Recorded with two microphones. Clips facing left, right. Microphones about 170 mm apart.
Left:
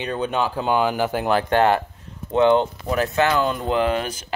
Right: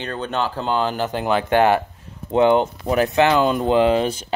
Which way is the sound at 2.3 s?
15° right (ahead or behind).